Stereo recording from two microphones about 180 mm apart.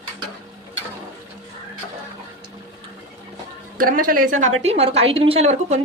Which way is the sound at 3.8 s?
50° right (ahead or behind).